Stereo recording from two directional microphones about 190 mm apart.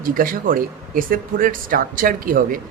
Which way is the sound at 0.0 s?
50° right (ahead or behind).